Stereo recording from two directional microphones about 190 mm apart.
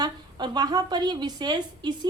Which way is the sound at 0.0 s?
20° right (ahead or behind).